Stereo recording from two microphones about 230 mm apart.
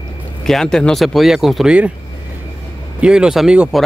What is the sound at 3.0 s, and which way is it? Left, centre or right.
Speech, centre.